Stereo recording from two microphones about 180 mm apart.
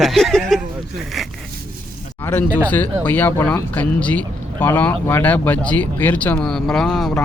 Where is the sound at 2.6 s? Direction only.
10° left (ahead or behind).